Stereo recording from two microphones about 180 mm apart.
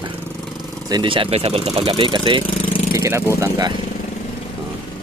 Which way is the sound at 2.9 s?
15° right (ahead or behind).